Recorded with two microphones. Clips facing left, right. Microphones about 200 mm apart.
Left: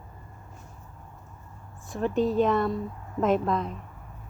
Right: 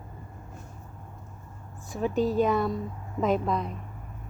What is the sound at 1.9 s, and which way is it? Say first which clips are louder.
Speech: left 1 dB; centre (ahead or behind).